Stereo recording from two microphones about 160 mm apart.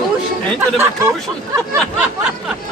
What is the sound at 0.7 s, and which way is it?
Speech, 15° right (ahead or behind).